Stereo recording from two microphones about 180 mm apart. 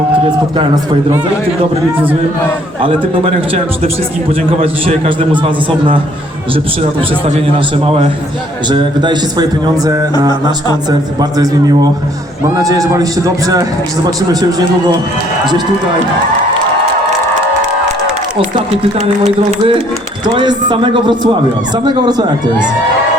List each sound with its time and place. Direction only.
0.3 s speech: 25° right (ahead or behind)
2.8 s a man's voice: 30° right (ahead or behind)
5.0 s speech: 25° right (ahead or behind)
8.7 s speech: 25° right (ahead or behind)
18.9 s a man's voice: 35° right (ahead or behind)